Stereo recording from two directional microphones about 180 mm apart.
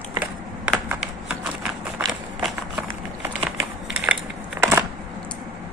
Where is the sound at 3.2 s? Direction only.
15° right (ahead or behind).